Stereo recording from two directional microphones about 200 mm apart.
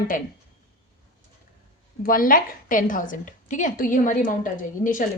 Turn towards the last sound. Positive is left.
turn(degrees=40)  # may be behind; listen again after turning